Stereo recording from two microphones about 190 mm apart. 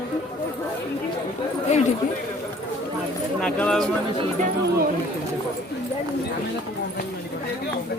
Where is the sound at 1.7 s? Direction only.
35° left (ahead or behind).